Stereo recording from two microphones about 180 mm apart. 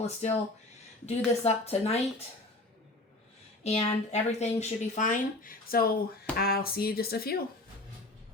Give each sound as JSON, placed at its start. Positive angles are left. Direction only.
{"t": 0.2, "sound": "speech", "side_deg": 40}
{"t": 3.6, "sound": "speech", "side_deg": 35}